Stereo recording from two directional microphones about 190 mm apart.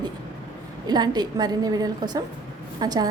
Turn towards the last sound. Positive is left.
turn(degrees=-20)  # may be behind; listen again after turning